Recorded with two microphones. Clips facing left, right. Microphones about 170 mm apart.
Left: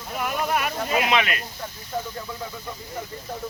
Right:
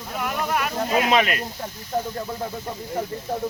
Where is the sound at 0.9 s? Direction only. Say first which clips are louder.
Right 3 dB; 40° right (ahead or behind).